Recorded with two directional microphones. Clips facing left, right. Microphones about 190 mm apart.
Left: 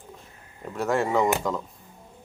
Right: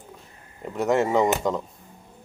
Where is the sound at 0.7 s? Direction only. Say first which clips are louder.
Right 3 dB; 20° right (ahead or behind).